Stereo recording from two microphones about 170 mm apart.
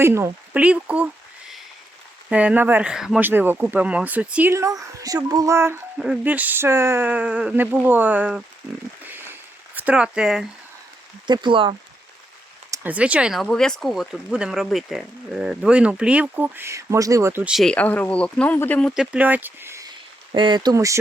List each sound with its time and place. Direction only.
0.0 s speech: 15° right (ahead or behind)
6.0 s speech: 5° right (ahead or behind)
9.0 s a sound: 10° right (ahead or behind)
11.3 s speech: 25° right (ahead or behind)
12.7 s speech: 10° right (ahead or behind)
17.5 s speech: 5° left (ahead or behind)
19.1 s speech: 10° right (ahead or behind)
20.3 s speech: 25° right (ahead or behind)